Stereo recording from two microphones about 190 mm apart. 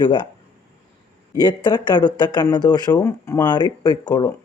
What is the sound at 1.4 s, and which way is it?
Speech, 20° left (ahead or behind).